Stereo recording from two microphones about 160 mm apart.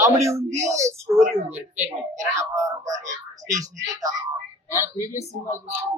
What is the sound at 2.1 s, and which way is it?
Speech, 20° right (ahead or behind).